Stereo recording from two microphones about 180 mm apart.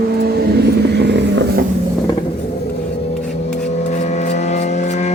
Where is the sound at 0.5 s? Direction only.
65° right (ahead or behind).